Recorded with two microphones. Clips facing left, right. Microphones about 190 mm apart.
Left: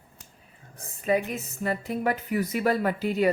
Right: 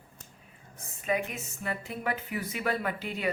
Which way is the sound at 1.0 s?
35° left (ahead or behind).